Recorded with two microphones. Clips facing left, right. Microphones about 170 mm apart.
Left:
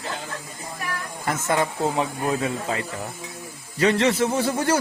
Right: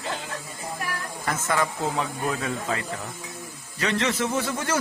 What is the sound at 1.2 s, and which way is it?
A man's voice, 25° left (ahead or behind).